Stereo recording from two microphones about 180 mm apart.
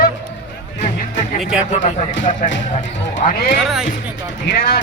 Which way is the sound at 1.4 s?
5° right (ahead or behind).